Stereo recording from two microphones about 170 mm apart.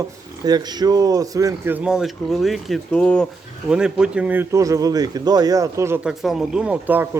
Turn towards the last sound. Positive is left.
turn(degrees=-10)  # may be behind; listen again after turning